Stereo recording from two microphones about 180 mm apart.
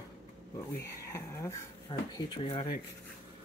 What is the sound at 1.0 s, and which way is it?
Speech, 15° left (ahead or behind).